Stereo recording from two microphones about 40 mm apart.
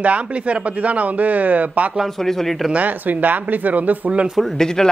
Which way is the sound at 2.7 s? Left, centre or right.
Right.